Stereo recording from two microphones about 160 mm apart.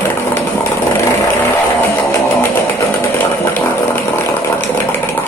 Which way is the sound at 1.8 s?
10° left (ahead or behind).